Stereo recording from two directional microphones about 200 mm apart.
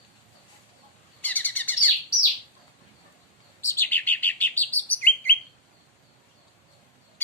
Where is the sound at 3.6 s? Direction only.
10° left (ahead or behind).